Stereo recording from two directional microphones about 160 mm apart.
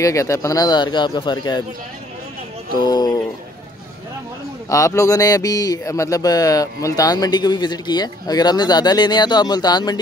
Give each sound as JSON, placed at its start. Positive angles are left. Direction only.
{"t": 0.0, "sound": "speech", "side_deg": 20}
{"t": 2.8, "sound": "speech", "side_deg": 25}
{"t": 4.6, "sound": "speech", "side_deg": 20}